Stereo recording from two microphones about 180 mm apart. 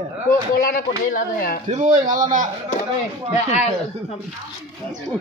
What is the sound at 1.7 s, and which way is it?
Speech, 45° right (ahead or behind).